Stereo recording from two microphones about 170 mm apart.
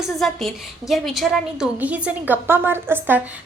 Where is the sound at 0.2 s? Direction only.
Centre (ahead or behind).